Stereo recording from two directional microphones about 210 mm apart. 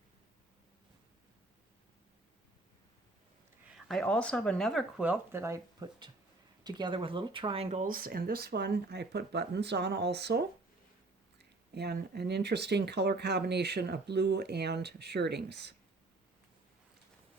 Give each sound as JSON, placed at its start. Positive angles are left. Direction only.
{"t": 3.7, "sound": "speech", "side_deg": 0}